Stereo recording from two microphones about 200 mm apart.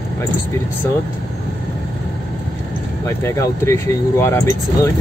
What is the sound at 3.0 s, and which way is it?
Speech, 15° left (ahead or behind).